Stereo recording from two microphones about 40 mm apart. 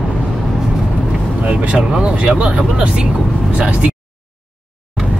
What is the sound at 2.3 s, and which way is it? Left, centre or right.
Speech, right.